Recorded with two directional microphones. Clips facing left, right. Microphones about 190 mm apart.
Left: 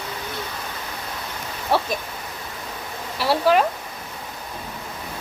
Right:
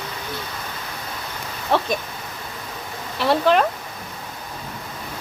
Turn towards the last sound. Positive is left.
turn(degrees=5)  # may be behind; listen again after turning